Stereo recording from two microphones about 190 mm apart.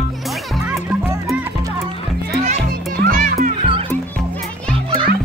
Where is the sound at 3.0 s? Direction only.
45° right (ahead or behind).